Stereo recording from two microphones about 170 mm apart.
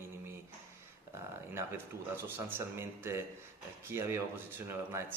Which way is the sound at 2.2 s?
15° right (ahead or behind).